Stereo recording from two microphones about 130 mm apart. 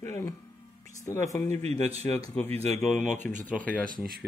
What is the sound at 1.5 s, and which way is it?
Speech, 55° right (ahead or behind).